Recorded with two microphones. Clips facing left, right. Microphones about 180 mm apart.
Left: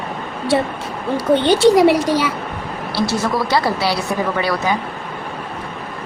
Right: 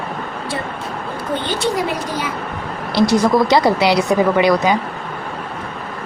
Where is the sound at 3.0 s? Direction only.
15° right (ahead or behind).